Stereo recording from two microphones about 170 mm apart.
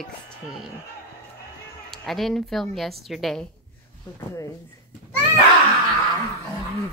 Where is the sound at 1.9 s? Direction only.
Centre (ahead or behind).